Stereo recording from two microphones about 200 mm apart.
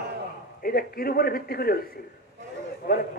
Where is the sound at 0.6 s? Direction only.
50° left (ahead or behind).